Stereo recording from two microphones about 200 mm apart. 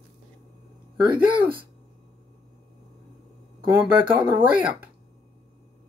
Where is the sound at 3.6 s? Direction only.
10° right (ahead or behind).